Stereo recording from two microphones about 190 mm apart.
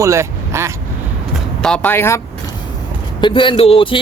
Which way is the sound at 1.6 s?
5° left (ahead or behind).